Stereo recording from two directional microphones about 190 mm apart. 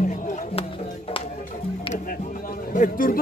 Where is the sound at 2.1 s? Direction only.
45° left (ahead or behind).